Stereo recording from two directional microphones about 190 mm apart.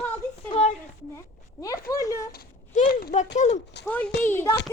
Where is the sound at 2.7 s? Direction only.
45° left (ahead or behind).